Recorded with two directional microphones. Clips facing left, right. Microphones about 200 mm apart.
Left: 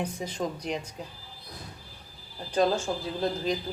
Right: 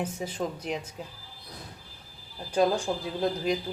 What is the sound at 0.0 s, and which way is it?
Speech, 5° right (ahead or behind).